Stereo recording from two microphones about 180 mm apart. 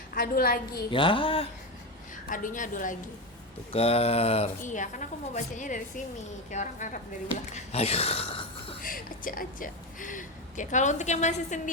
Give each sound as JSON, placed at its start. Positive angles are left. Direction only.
{"t": 0.1, "sound": "a woman's voice", "side_deg": 55}
{"t": 0.9, "sound": "speech", "side_deg": 30}
{"t": 2.3, "sound": "speech", "side_deg": 45}
{"t": 3.7, "sound": "speech", "side_deg": 35}
{"t": 8.8, "sound": "speech", "side_deg": 50}